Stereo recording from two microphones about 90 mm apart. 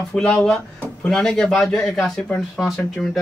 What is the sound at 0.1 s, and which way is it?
Speech, 10° left (ahead or behind).